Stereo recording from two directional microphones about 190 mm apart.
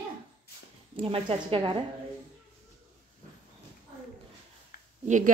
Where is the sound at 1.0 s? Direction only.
30° right (ahead or behind).